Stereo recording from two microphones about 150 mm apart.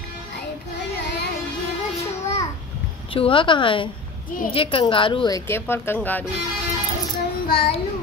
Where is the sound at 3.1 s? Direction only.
35° left (ahead or behind); by 6.2 s 15° left (ahead or behind).